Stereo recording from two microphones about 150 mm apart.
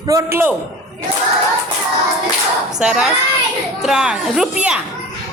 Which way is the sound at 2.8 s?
5° right (ahead or behind).